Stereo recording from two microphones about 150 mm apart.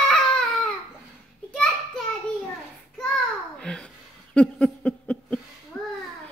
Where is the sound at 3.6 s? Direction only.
5° left (ahead or behind).